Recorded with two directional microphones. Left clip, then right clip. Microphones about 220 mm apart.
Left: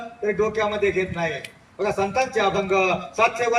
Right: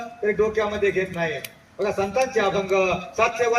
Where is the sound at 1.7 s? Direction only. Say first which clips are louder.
Even; 50° left (ahead or behind).